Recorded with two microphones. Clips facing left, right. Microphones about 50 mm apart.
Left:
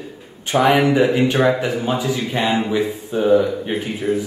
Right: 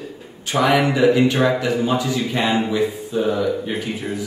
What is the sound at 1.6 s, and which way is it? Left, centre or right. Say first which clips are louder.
A man's voice: right 1 dB; left.